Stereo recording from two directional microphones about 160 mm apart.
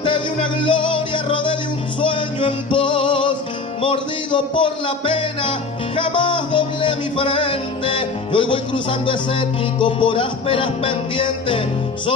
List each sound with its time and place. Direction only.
0.0 s music: 30° left (ahead or behind)